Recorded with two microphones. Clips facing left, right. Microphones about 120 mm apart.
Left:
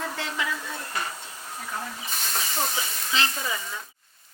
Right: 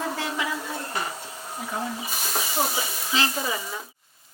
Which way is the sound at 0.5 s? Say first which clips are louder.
Right 3 dB; 25° right (ahead or behind).